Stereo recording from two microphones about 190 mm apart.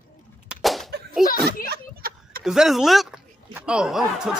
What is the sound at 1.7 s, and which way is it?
Vehicle, 50° right (ahead or behind).